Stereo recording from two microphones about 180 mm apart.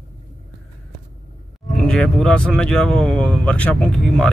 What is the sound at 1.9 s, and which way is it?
Speech, 5° left (ahead or behind).